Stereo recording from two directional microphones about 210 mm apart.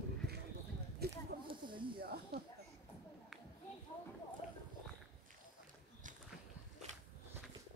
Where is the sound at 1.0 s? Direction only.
50° right (ahead or behind).